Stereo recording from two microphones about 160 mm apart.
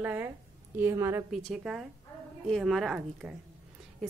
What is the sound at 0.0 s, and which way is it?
A woman's voice, 10° right (ahead or behind).